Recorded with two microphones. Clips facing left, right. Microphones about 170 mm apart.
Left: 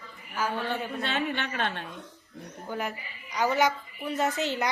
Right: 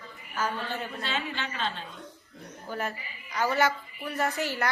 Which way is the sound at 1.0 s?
60° left (ahead or behind).